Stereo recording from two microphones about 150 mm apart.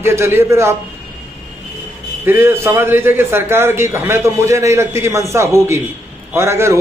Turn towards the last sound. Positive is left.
turn(degrees=-20)  # may be behind; listen again after turning